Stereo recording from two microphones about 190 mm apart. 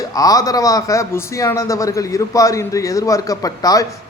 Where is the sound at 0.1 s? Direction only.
20° left (ahead or behind).